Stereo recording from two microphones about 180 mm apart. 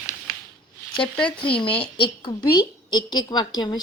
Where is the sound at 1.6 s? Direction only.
5° left (ahead or behind).